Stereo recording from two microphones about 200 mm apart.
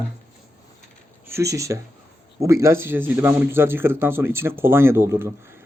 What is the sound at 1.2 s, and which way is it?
A man's voice, 15° right (ahead or behind).